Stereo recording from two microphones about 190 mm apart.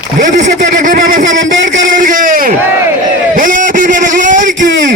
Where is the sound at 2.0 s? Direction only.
45° right (ahead or behind).